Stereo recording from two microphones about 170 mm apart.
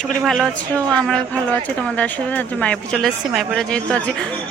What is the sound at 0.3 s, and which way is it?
A woman's voice, centre (ahead or behind).